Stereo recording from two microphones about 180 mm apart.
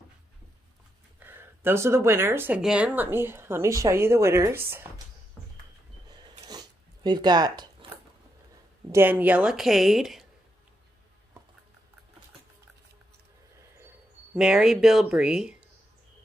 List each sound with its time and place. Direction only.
1.2 s speech: 10° right (ahead or behind)
6.0 s a sound: 25° right (ahead or behind)
6.4 s biting: 20° right (ahead or behind)
8.9 s a woman's voice: 10° right (ahead or behind)
14.3 s a woman's voice: 5° right (ahead or behind)